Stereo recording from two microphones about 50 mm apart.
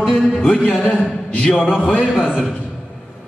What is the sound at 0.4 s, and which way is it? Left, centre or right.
A man's voice, left.